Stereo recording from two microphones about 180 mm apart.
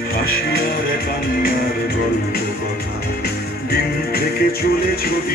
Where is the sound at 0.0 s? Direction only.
60° left (ahead or behind).